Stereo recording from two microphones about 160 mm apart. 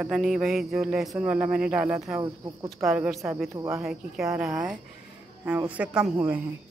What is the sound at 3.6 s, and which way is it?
Speech, 15° right (ahead or behind).